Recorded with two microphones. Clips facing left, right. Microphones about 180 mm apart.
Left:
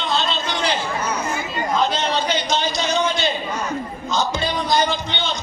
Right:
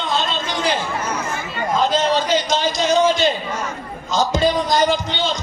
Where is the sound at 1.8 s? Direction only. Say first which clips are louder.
Right 6 dB; 45° right (ahead or behind).